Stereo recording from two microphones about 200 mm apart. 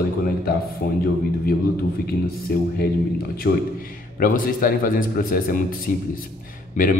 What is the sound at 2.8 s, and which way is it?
A man's voice, 50° left (ahead or behind).